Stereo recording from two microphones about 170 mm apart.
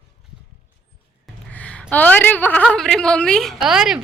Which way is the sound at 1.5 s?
10° left (ahead or behind).